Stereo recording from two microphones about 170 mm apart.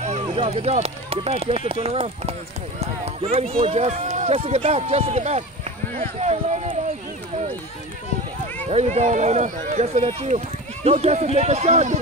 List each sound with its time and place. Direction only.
0.3 s speech: 35° right (ahead or behind)
8.6 s speech: 40° right (ahead or behind)